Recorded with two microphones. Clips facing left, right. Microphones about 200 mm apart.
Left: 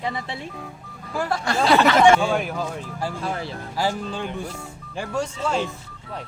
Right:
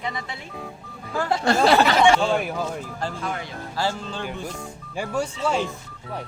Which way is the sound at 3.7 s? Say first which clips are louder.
Left 2 dB; 15° left (ahead or behind).